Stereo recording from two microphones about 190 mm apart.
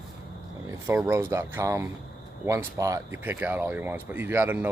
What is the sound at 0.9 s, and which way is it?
Speech, 15° right (ahead or behind).